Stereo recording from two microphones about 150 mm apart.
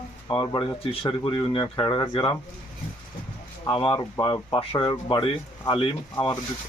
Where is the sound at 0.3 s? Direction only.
25° left (ahead or behind).